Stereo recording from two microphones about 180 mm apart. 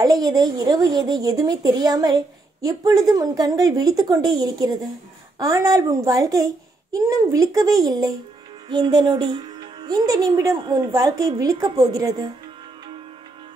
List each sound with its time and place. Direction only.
0.0 s speech: 20° right (ahead or behind)